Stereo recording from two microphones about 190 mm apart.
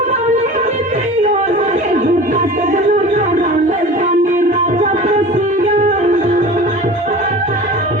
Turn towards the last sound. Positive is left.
turn(degrees=-40)  # may be behind; listen again after turning